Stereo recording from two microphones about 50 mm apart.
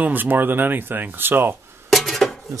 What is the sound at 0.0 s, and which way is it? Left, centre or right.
Speech, right.